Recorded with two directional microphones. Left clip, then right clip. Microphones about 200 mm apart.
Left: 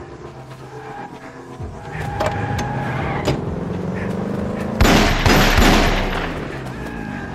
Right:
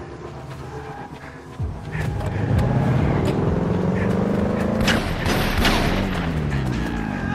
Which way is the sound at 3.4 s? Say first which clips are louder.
Right 3 dB; 20° right (ahead or behind).